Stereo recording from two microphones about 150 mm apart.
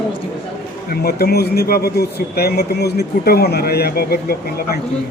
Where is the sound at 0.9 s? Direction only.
90° left.